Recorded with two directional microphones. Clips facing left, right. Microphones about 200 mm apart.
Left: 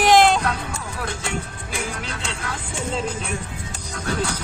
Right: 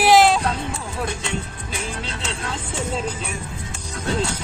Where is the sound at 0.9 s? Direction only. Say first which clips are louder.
Right 2 dB; 20° right (ahead or behind).